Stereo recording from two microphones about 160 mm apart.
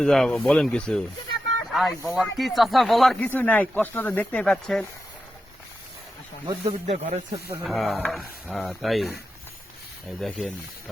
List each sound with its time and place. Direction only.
0.0 s speech: 5° left (ahead or behind)
3.2 s speech: 10° left (ahead or behind)
6.5 s speech: 40° right (ahead or behind)
7.6 s speech: centre (ahead or behind)
10.2 s speech: centre (ahead or behind)